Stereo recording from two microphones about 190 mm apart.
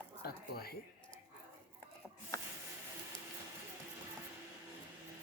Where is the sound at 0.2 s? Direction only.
55° left (ahead or behind).